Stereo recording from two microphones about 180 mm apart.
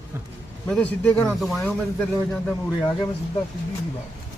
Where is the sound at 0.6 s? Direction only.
5° left (ahead or behind).